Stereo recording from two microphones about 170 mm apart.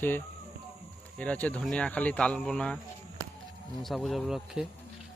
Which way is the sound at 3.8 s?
Centre (ahead or behind).